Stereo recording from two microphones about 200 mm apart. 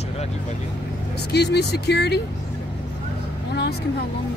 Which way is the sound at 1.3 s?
55° left (ahead or behind).